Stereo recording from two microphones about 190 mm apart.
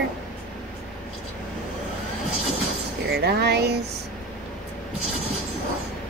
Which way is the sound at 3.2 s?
60° right (ahead or behind).